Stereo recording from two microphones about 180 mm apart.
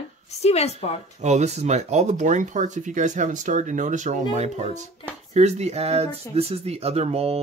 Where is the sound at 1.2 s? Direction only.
40° right (ahead or behind).